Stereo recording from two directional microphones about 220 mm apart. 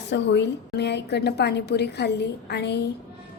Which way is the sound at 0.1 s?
50° left (ahead or behind).